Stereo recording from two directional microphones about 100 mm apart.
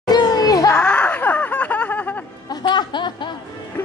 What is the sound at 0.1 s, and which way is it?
Children playing, 40° left (ahead or behind).